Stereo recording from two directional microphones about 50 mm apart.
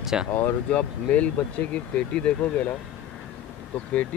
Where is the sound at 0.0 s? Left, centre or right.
Centre.